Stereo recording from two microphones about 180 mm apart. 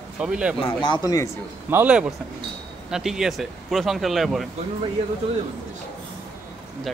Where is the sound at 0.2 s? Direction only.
5° right (ahead or behind).